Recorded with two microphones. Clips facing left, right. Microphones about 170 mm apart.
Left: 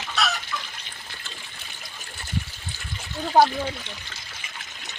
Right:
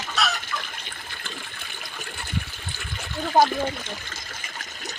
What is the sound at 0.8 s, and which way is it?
Water, 55° right (ahead or behind).